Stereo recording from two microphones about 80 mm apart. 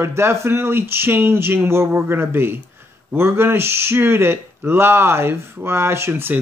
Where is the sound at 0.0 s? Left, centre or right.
Right.